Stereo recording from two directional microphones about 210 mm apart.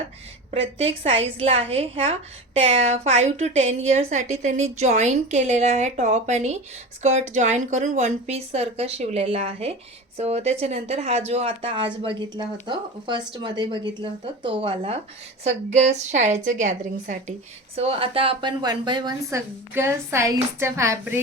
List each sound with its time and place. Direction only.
0.5 s a woman's voice: 30° right (ahead or behind); by 21.2 s 10° right (ahead or behind)